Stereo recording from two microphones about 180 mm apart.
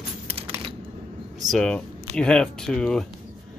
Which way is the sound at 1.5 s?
5° left (ahead or behind).